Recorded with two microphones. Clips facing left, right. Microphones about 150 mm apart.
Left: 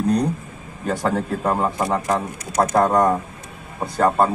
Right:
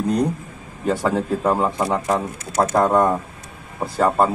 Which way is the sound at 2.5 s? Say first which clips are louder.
Even; 15° left (ahead or behind).